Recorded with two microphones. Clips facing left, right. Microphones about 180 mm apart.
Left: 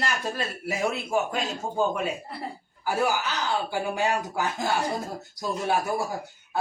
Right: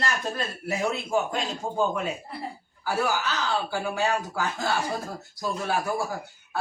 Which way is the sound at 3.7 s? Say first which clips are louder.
Even; 15° left (ahead or behind).